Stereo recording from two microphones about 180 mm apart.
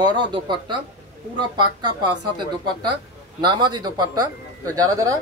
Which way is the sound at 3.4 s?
25° right (ahead or behind).